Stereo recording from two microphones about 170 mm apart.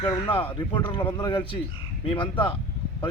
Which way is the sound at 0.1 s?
30° left (ahead or behind).